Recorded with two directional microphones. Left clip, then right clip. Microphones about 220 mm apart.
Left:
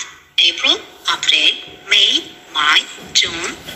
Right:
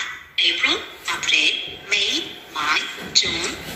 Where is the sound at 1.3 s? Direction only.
10° left (ahead or behind).